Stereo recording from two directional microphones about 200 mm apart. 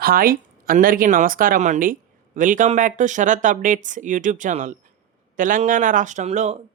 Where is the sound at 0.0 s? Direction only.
45° right (ahead or behind).